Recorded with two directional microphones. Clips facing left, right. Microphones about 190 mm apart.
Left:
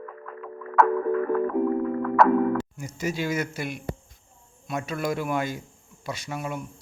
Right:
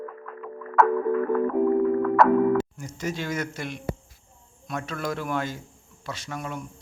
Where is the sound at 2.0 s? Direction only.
Centre (ahead or behind).